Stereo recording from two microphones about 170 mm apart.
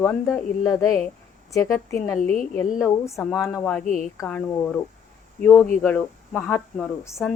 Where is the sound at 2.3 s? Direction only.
5° left (ahead or behind).